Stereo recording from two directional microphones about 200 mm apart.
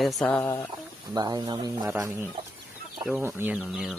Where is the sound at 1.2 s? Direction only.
20° right (ahead or behind).